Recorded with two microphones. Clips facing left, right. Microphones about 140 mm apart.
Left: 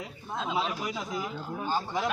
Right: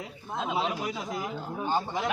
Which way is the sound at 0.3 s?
20° right (ahead or behind).